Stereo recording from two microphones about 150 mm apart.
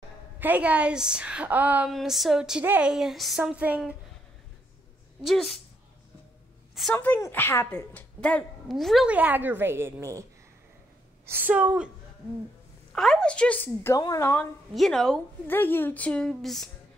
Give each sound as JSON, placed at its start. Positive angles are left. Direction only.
{"t": 0.4, "sound": "a woman's voice", "side_deg": -10}
{"t": 1.9, "sound": "a woman's voice", "side_deg": 0}
{"t": 5.2, "sound": "a woman's voice", "side_deg": 0}
{"t": 7.0, "sound": "a woman's voice", "side_deg": 15}
{"t": 11.2, "sound": "a woman's voice", "side_deg": -15}
{"t": 12.9, "sound": "a woman's voice", "side_deg": 5}
{"t": 13.9, "sound": "speech", "side_deg": 25}
{"t": 14.7, "sound": "a woman's voice", "side_deg": 0}
{"t": 15.4, "sound": "a woman's voice", "side_deg": 15}